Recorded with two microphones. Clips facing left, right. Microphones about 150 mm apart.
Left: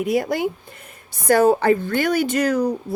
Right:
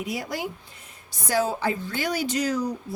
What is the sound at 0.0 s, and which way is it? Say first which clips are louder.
A woman's voice: left 10 dB; 55° left (ahead or behind).